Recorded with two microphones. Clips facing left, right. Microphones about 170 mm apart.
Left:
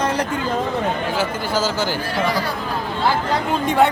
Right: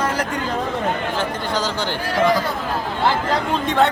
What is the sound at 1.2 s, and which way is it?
Speech, 5° left (ahead or behind).